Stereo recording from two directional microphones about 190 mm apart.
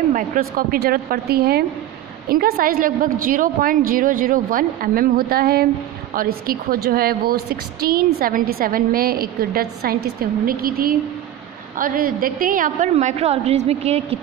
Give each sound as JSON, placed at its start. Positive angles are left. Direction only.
{"t": 0.1, "sound": "a woman's voice", "side_deg": -50}